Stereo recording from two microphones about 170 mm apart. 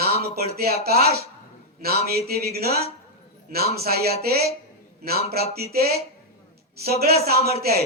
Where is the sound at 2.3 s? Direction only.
65° right (ahead or behind).